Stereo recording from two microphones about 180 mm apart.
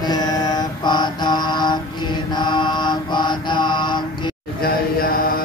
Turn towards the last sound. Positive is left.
turn(degrees=55)  # may be behind; listen again after turning